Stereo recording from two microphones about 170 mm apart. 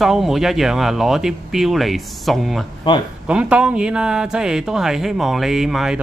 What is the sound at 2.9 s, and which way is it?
Speech, 25° left (ahead or behind).